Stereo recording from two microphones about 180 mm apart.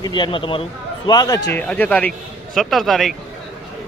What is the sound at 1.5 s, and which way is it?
A man's voice, 10° left (ahead or behind).